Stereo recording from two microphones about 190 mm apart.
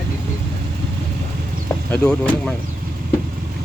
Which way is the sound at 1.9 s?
5° left (ahead or behind).